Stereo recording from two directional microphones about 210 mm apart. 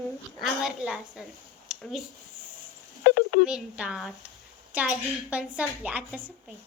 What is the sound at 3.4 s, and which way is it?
A woman's voice, 5° right (ahead or behind).